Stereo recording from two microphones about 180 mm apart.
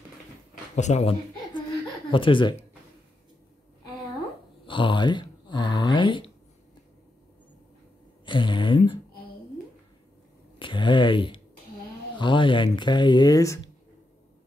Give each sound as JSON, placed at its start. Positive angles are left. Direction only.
{"t": 0.7, "sound": "speech", "side_deg": 40}
{"t": 2.0, "sound": "speech", "side_deg": 30}
{"t": 4.6, "sound": "speech", "side_deg": 25}
{"t": 8.3, "sound": "speech", "side_deg": 25}
{"t": 10.6, "sound": "a sound", "side_deg": 25}
{"t": 12.2, "sound": "speech", "side_deg": 25}